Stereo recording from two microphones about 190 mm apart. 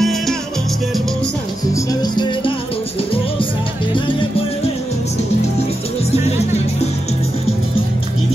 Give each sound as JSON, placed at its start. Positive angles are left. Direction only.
{"t": 0.0, "sound": "music", "side_deg": 0}
{"t": 1.7, "sound": "music", "side_deg": 20}